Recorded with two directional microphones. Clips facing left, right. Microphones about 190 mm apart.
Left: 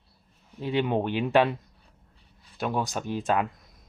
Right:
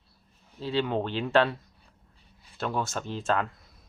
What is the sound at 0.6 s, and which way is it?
Speech, 15° left (ahead or behind).